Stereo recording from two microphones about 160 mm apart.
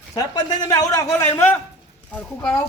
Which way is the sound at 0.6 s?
20° left (ahead or behind).